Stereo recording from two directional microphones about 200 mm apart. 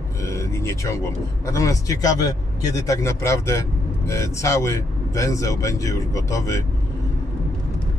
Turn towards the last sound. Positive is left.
turn(degrees=15)  # may be behind; listen again after turning